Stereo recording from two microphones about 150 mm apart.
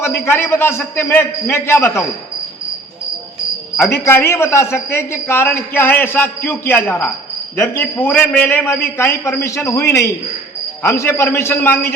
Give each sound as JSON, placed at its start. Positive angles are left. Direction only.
{"t": 0.0, "sound": "a man's voice", "side_deg": 15}
{"t": 3.8, "sound": "a man's voice", "side_deg": 15}